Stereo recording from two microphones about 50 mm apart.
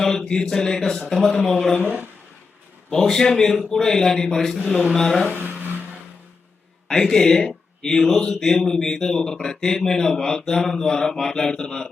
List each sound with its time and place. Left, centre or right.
0.0 s speech: centre
2.9 s speech: centre
5.3 s a sound: right
6.8 s speech: centre